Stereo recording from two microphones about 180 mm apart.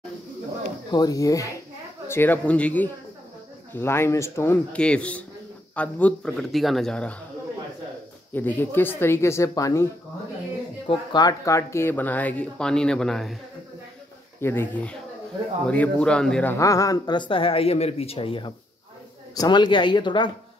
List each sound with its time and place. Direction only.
0.9 s a man's voice: 20° left (ahead or behind)
8.3 s speech: 10° left (ahead or behind)
10.9 s speech: 20° left (ahead or behind); by 13.4 s centre (ahead or behind)
14.4 s a man's voice: 10° left (ahead or behind)
16.5 s speech: 20° left (ahead or behind)